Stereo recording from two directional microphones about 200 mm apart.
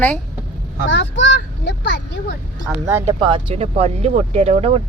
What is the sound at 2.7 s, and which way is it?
Speech, 5° right (ahead or behind).